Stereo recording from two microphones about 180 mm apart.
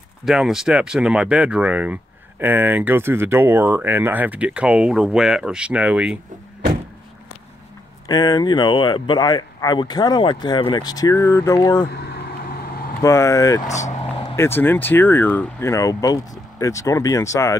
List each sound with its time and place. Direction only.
0.2 s speech: centre (ahead or behind)
8.1 s speech: 20° left (ahead or behind)
11.9 s vehicle: 65° left (ahead or behind)
13.0 s speech: 15° left (ahead or behind)
13.7 s speech: 40° left (ahead or behind)
14.3 s speech: 15° left (ahead or behind)